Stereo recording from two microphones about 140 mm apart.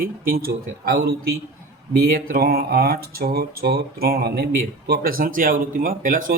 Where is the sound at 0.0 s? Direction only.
90° right.